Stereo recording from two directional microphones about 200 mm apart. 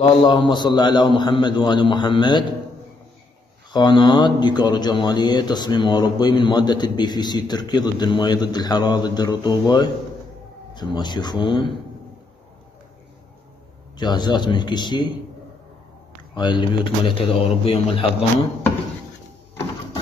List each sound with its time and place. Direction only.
0.2 s speech: 25° left (ahead or behind)
3.7 s speech: 20° left (ahead or behind)
13.9 s speech: 20° left (ahead or behind)
16.3 s speech: 25° left (ahead or behind)